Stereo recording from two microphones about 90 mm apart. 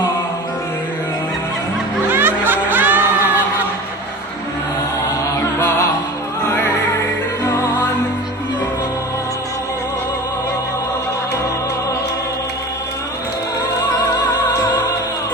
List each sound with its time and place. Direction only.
2.0 s music: 20° right (ahead or behind)